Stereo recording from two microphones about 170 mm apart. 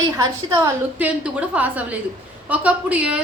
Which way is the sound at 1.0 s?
10° right (ahead or behind).